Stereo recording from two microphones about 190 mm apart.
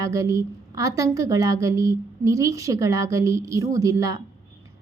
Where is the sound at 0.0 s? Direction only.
15° right (ahead or behind).